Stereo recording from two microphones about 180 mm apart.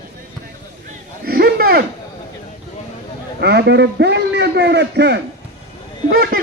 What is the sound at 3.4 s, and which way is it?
A man's voice, 65° right (ahead or behind).